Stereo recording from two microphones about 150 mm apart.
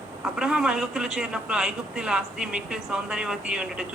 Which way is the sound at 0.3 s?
5° right (ahead or behind).